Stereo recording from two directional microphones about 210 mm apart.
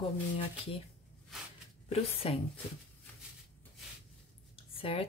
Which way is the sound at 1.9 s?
30° left (ahead or behind).